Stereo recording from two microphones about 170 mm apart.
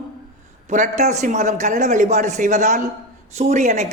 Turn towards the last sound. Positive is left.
turn(degrees=-45)  # may be behind; listen again after turning